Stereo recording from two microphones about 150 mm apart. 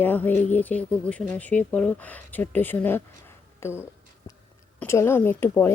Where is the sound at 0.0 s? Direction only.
10° left (ahead or behind).